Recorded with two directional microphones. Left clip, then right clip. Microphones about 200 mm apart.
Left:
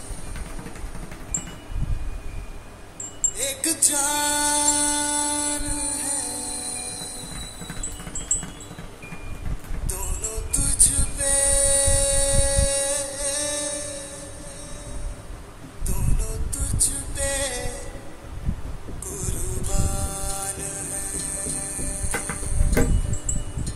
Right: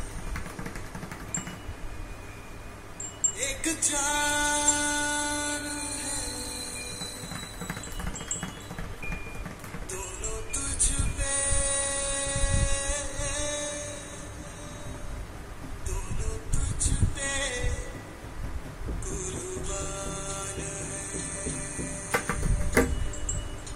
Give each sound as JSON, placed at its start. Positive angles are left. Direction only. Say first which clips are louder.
{"t": 3.3, "sound": "music", "louder": "left 5 dB", "side_deg": 45}
{"t": 9.8, "sound": "music", "louder": "left 4 dB", "side_deg": 40}
{"t": 16.5, "sound": "music", "louder": "left 6 dB", "side_deg": 45}
{"t": 19.1, "sound": "music", "louder": "left 2 dB", "side_deg": 40}